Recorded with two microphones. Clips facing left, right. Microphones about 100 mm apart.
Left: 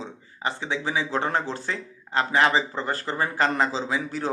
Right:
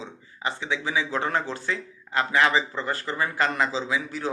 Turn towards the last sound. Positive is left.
turn(degrees=40)  # may be behind; listen again after turning